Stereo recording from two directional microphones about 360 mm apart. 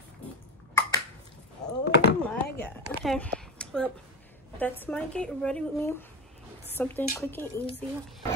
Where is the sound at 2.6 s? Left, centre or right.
Centre.